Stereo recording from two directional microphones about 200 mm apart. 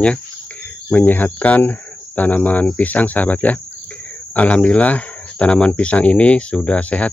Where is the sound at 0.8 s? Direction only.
10° left (ahead or behind).